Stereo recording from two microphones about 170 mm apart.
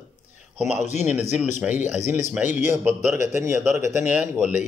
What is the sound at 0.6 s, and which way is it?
Speech, 45° left (ahead or behind).